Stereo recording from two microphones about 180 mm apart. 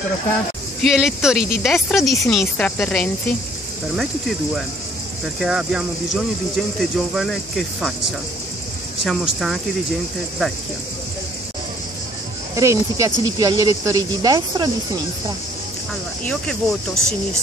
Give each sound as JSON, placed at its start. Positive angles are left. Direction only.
{"t": 0.8, "sound": "speech", "side_deg": -5}
{"t": 5.4, "sound": "speech", "side_deg": -5}
{"t": 9.0, "sound": "speech", "side_deg": 0}
{"t": 12.5, "sound": "speech", "side_deg": -20}